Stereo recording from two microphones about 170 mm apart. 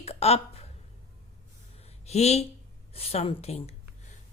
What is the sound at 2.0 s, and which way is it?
A woman's voice, 40° left (ahead or behind).